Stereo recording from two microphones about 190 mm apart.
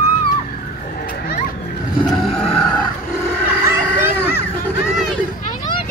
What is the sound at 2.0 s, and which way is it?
Vehicle, centre (ahead or behind).